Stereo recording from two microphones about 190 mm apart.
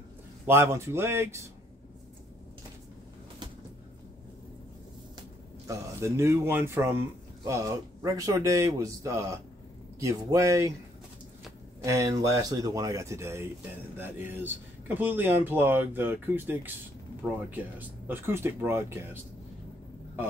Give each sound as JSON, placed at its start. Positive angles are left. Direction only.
{"t": 0.5, "sound": "speech", "side_deg": -15}
{"t": 5.7, "sound": "speech", "side_deg": -15}
{"t": 11.8, "sound": "speech", "side_deg": -15}